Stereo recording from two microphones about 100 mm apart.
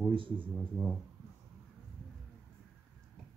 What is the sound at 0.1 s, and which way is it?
Speech, 60° right (ahead or behind).